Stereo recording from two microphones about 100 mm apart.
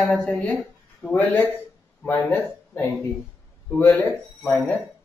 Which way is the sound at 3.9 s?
20° left (ahead or behind).